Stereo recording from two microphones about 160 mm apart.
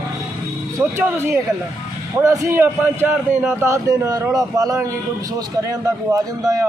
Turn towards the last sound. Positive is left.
turn(degrees=-20)  # may be behind; listen again after turning